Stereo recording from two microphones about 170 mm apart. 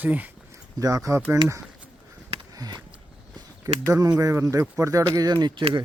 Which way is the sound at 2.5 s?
20° right (ahead or behind).